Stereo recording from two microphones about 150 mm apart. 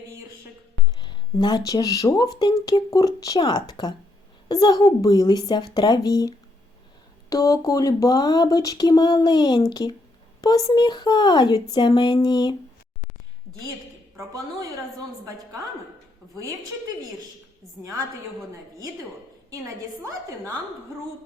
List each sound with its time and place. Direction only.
1.0 s speech: 30° left (ahead or behind)
14.2 s speech: 20° right (ahead or behind)